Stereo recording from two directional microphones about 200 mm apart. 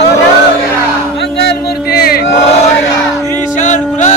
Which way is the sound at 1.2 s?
55° left (ahead or behind).